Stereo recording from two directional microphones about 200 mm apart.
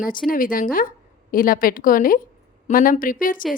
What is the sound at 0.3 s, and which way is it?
A woman's voice, 45° left (ahead or behind).